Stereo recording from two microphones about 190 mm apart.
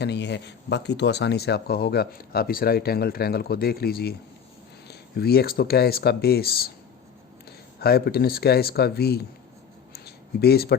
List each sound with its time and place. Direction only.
0.0 s speech: 65° left (ahead or behind)
7.8 s speech: 55° left (ahead or behind)
10.4 s speech: 55° left (ahead or behind)